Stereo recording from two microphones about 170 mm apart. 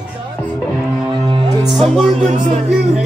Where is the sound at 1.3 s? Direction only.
30° right (ahead or behind).